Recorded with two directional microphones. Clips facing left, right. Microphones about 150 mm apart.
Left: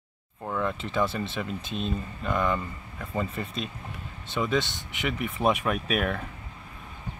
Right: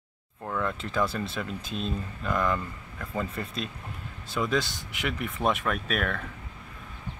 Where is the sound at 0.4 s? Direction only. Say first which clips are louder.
Left 1 dB; 5° left (ahead or behind).